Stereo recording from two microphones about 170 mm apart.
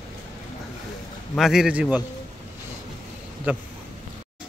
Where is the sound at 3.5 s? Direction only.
10° right (ahead or behind).